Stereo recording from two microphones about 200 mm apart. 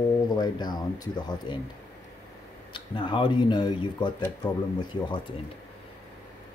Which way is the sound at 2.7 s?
25° left (ahead or behind).